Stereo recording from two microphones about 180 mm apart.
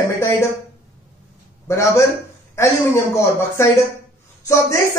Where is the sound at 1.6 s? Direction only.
15° left (ahead or behind).